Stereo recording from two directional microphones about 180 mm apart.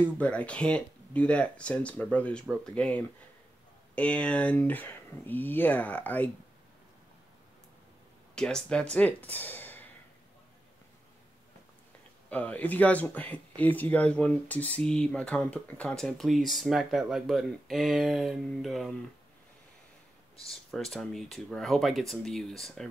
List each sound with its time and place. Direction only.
0.0 s speech: 10° left (ahead or behind)
8.4 s speech: 5° left (ahead or behind)
12.3 s speech: 10° left (ahead or behind)
20.4 s speech: centre (ahead or behind)